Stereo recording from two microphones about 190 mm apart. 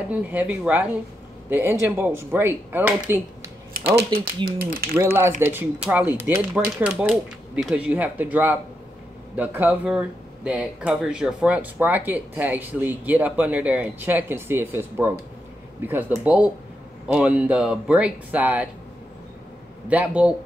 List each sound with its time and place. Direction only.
0.1 s speech: 10° right (ahead or behind)
3.8 s speech: 60° right (ahead or behind)
4.1 s speech: 25° right (ahead or behind)
4.6 s speech: 55° right (ahead or behind)
5.4 s speech: 10° right (ahead or behind)
19.9 s speech: 5° right (ahead or behind)